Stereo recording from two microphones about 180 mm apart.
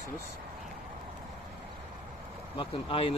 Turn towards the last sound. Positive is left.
turn(degrees=30)  # may be behind; listen again after turning